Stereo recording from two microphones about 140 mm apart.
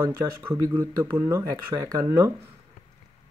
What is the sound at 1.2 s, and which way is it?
Speech, 25° right (ahead or behind).